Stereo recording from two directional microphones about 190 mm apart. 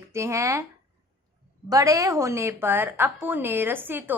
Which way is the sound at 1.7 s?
15° right (ahead or behind).